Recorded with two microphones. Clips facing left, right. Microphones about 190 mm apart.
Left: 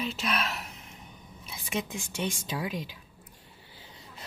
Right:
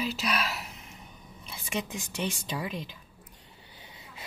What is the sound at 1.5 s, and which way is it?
Speech, centre (ahead or behind).